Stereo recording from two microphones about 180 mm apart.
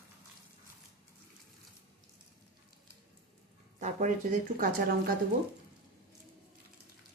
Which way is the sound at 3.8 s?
45° right (ahead or behind).